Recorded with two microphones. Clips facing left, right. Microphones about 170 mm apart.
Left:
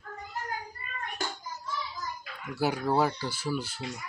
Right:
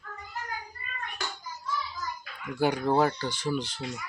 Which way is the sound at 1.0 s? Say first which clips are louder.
Left 2 dB; 45° left (ahead or behind).